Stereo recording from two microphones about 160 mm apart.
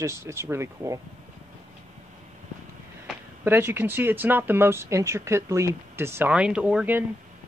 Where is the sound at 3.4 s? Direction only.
15° right (ahead or behind).